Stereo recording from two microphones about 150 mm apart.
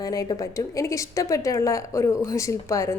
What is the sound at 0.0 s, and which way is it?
A woman's voice, 25° left (ahead or behind).